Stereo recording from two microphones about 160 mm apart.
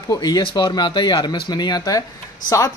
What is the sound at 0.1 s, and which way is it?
Speech, 25° left (ahead or behind).